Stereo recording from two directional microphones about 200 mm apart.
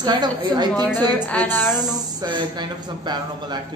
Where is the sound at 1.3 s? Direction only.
5° left (ahead or behind).